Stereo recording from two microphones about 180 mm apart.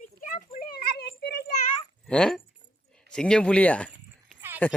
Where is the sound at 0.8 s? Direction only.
60° left (ahead or behind).